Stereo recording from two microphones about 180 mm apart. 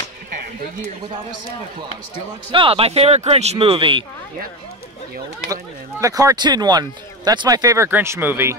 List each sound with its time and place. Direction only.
2.5 s speech: 30° right (ahead or behind)
5.5 s speech: 20° right (ahead or behind)